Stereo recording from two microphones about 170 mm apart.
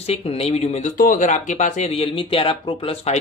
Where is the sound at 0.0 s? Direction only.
35° left (ahead or behind).